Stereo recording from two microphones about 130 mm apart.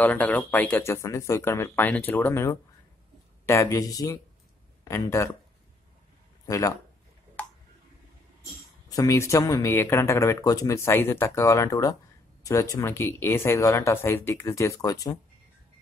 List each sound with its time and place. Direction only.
0.0 s speech: 10° left (ahead or behind)
6.4 s speech: 25° left (ahead or behind)
8.8 s speech: 25° left (ahead or behind)